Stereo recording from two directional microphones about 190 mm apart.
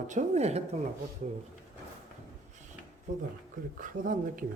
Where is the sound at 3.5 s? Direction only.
45° right (ahead or behind).